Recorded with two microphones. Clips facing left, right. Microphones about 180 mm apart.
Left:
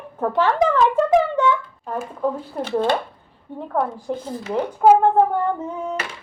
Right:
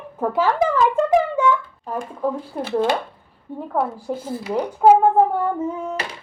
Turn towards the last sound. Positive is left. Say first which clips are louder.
# right 1 dB
turn(degrees=-5)  # may be behind; listen again after turning